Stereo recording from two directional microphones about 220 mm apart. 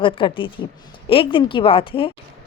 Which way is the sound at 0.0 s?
25° left (ahead or behind).